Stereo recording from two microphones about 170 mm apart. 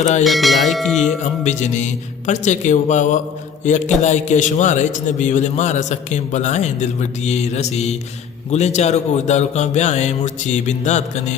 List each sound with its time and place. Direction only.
0.0 s a man's voice: 45° left (ahead or behind)
0.3 s music: centre (ahead or behind)
1.2 s a man's voice: 45° left (ahead or behind)